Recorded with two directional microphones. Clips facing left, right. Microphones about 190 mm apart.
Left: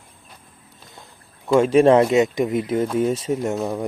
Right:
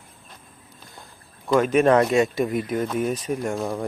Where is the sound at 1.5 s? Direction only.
30° left (ahead or behind).